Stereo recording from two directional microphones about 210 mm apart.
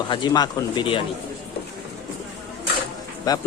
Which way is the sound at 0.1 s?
20° left (ahead or behind).